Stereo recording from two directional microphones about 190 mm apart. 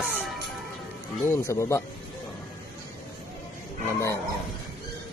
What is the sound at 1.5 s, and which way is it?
Speech, 15° left (ahead or behind).